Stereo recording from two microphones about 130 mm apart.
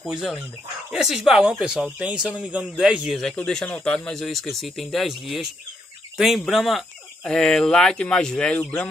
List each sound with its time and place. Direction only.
0.0 s speech: 5° right (ahead or behind)